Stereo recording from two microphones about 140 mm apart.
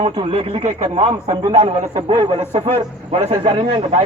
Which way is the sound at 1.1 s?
30° right (ahead or behind).